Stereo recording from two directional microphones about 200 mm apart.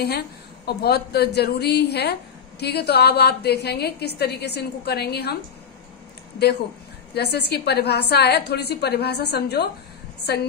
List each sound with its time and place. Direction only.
0.7 s a woman's voice: 55° left (ahead or behind)
7.2 s a woman's voice: 55° left (ahead or behind)